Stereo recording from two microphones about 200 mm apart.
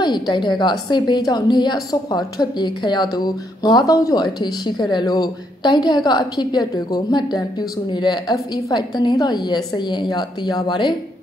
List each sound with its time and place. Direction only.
0.0 s a woman's voice: 20° left (ahead or behind)